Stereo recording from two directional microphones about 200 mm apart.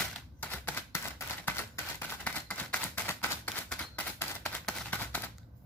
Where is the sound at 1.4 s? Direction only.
10° left (ahead or behind).